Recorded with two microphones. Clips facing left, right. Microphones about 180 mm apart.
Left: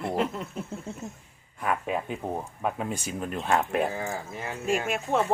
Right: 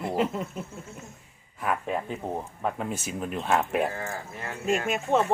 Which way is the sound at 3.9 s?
15° left (ahead or behind).